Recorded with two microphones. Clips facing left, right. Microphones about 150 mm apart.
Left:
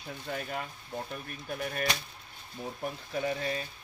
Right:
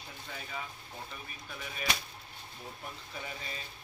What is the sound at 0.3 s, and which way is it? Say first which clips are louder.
Speech: left 7 dB; 65° left (ahead or behind).